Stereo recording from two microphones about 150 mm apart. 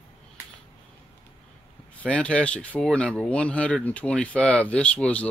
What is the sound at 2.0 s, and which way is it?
Speech, 5° left (ahead or behind).